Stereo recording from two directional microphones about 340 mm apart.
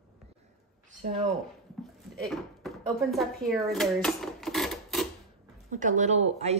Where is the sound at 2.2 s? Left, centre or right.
Centre.